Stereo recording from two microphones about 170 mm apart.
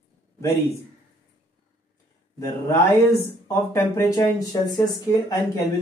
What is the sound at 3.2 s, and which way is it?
Speech, 15° left (ahead or behind).